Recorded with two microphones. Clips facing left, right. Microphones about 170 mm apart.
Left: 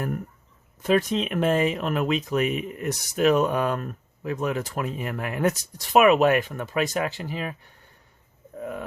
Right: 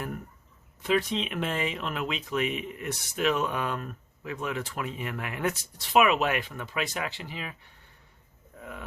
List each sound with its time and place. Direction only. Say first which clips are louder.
0.8 s speech: left 5 dB; 45° left (ahead or behind)